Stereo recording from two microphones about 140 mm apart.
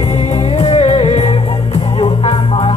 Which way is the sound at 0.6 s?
40° left (ahead or behind).